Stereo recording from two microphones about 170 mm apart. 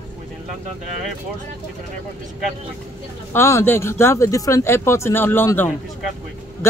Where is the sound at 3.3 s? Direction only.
15° left (ahead or behind).